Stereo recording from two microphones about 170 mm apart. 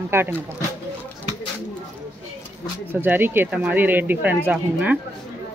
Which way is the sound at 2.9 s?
10° right (ahead or behind).